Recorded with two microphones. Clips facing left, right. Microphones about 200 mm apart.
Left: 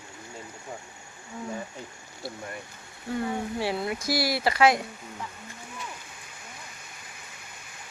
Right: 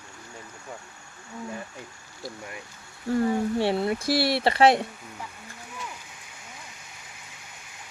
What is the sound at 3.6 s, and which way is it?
Speech, 30° right (ahead or behind).